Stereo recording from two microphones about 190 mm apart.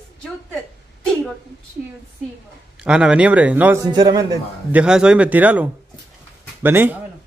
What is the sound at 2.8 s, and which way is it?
Speech, 5° right (ahead or behind).